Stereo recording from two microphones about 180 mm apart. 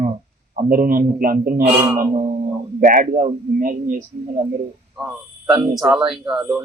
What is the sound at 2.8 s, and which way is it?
Speech, 50° right (ahead or behind).